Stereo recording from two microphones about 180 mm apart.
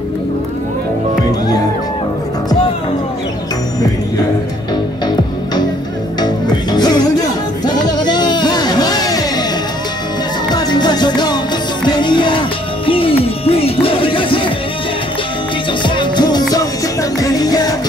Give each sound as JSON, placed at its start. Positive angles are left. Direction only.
{"t": 6.2, "sound": "music", "side_deg": 25}
{"t": 10.5, "sound": "music", "side_deg": 25}
{"t": 15.8, "sound": "music", "side_deg": 25}